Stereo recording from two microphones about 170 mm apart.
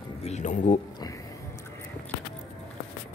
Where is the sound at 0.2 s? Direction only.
45° left (ahead or behind).